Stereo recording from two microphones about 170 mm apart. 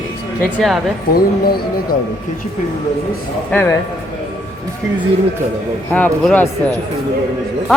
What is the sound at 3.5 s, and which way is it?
Speech, 10° left (ahead or behind).